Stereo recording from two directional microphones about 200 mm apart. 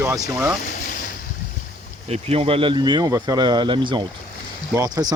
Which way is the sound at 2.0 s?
30° right (ahead or behind).